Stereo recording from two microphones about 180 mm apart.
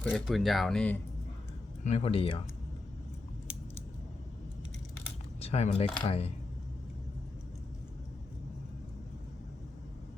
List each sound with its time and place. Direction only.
0.1 s speech: centre (ahead or behind)
1.8 s speech: 35° left (ahead or behind)
5.4 s speech: 35° left (ahead or behind)